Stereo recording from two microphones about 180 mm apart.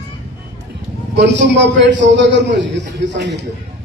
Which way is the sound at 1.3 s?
80° right.